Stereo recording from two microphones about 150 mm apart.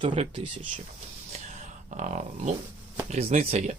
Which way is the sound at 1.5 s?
55° right (ahead or behind).